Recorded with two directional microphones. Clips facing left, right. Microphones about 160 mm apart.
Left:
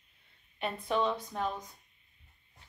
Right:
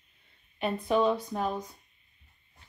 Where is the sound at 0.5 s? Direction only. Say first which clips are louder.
Right 5 dB; 5° right (ahead or behind).